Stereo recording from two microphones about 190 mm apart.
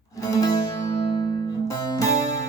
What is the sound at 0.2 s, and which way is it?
Music, 20° left (ahead or behind).